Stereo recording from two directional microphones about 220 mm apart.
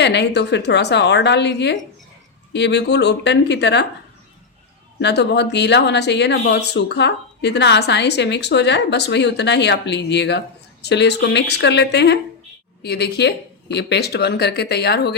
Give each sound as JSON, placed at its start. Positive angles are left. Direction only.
{"t": 0.0, "sound": "speech", "side_deg": 50}
{"t": 4.9, "sound": "speech", "side_deg": 50}